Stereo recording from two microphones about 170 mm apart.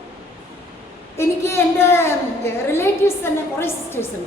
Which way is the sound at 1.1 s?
15° left (ahead or behind).